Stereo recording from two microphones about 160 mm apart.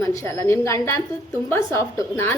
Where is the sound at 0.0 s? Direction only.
20° left (ahead or behind).